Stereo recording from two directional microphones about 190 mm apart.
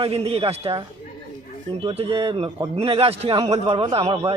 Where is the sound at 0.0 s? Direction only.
30° right (ahead or behind).